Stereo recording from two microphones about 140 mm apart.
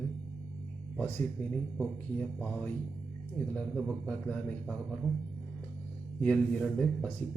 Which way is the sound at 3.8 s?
5° left (ahead or behind).